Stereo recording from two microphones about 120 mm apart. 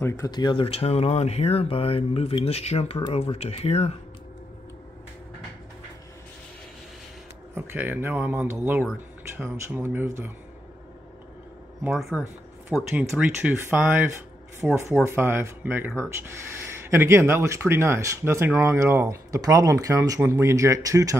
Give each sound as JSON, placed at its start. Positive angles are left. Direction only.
{"t": 0.3, "sound": "speech", "side_deg": 40}
{"t": 0.7, "sound": "speech", "side_deg": 60}
{"t": 7.5, "sound": "speech", "side_deg": -20}
{"t": 11.8, "sound": "speech", "side_deg": -5}
{"t": 14.6, "sound": "speech", "side_deg": -5}
{"t": 15.0, "sound": "speech", "side_deg": -20}